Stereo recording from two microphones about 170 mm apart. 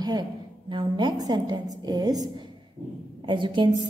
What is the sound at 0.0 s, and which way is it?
A woman's voice, 25° right (ahead or behind).